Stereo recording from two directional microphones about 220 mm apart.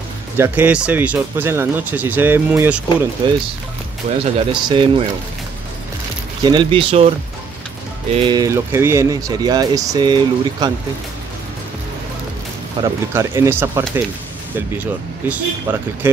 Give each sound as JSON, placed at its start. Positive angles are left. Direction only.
{"t": 0.4, "sound": "speech", "side_deg": -5}
{"t": 3.2, "sound": "speech", "side_deg": -20}
{"t": 6.4, "sound": "speech", "side_deg": -20}
{"t": 8.1, "sound": "speech", "side_deg": -20}
{"t": 12.8, "sound": "speech", "side_deg": -15}